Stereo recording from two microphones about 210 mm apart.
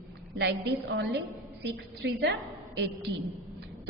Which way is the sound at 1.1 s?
55° right (ahead or behind).